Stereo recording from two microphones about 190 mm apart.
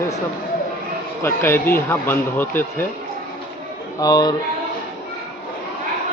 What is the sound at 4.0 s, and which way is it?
Speech, 20° left (ahead or behind).